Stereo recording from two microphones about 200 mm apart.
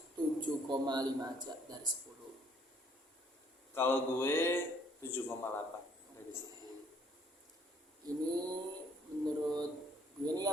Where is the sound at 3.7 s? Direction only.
10° left (ahead or behind).